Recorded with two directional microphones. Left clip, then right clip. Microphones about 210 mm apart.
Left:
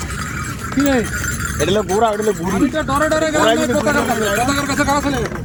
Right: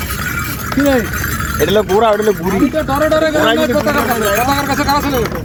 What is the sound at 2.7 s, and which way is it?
Speech, 20° left (ahead or behind).